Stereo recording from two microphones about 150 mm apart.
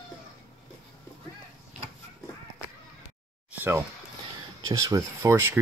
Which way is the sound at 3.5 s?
15° right (ahead or behind).